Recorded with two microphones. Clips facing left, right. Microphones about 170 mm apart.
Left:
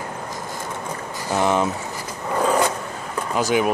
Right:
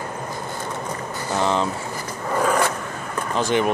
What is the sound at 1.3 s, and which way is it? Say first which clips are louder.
Speech: left 2 dB; 15° left (ahead or behind).